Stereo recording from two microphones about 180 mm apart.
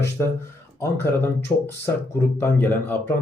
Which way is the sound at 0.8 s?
10° left (ahead or behind).